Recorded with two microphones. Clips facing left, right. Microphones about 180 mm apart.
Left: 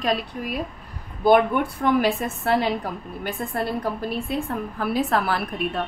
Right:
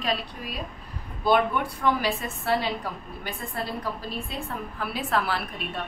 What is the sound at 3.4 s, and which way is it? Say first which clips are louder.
Speech: left 7 dB; 50° left (ahead or behind).